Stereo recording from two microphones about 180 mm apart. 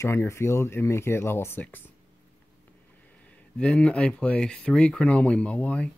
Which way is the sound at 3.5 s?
5° left (ahead or behind).